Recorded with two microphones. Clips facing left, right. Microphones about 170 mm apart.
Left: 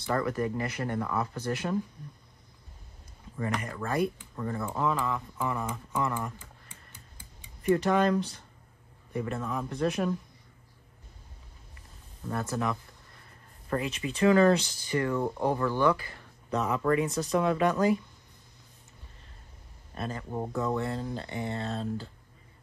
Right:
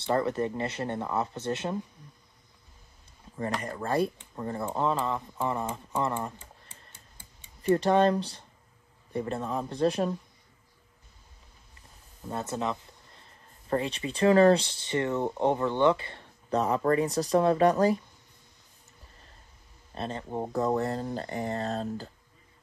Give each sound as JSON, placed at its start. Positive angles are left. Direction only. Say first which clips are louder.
{"t": 0.0, "sound": "speech", "louder": "right 2 dB", "side_deg": -25}
{"t": 3.3, "sound": "speech", "louder": "right 1 dB", "side_deg": -30}
{"t": 12.3, "sound": "speech", "louder": "even", "side_deg": -20}
{"t": 19.9, "sound": "speech", "louder": "right 1 dB", "side_deg": -30}
{"t": 20.5, "sound": "speech", "louder": "right 4 dB", "side_deg": -35}